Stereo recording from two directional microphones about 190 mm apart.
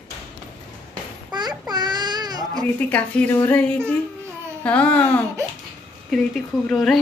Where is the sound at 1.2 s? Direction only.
20° right (ahead or behind).